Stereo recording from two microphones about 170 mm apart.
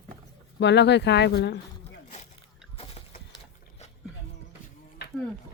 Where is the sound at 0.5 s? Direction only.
90° left.